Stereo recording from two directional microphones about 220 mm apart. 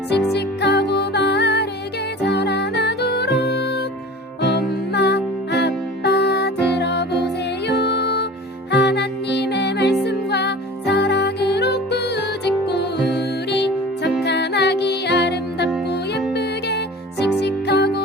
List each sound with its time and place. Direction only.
0.3 s music: 50° left (ahead or behind)